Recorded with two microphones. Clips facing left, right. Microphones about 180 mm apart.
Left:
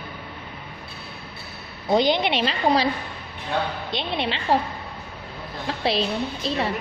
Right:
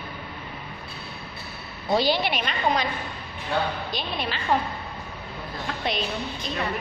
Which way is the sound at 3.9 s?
25° left (ahead or behind).